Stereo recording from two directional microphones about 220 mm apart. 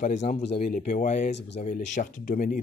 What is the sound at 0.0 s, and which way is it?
Speech, 35° left (ahead or behind).